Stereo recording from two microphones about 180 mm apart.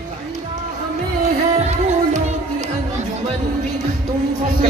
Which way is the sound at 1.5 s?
40° right (ahead or behind).